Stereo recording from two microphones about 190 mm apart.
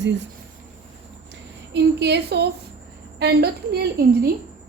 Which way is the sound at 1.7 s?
65° right (ahead or behind).